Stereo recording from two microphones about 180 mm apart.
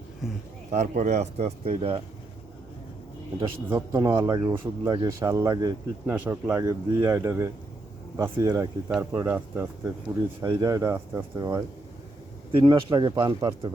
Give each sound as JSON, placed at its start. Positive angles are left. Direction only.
{"t": 0.7, "sound": "speech", "side_deg": -40}
{"t": 3.7, "sound": "speech", "side_deg": -20}
{"t": 10.4, "sound": "speech", "side_deg": -20}